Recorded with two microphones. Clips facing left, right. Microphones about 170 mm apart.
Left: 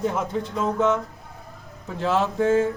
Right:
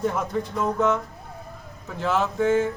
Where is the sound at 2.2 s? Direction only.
35° left (ahead or behind).